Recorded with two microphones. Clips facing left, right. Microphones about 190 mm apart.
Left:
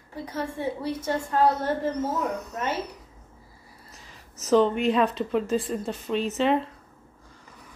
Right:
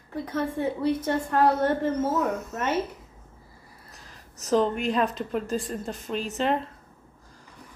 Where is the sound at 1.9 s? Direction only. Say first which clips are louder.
Right 2 dB; 25° right (ahead or behind).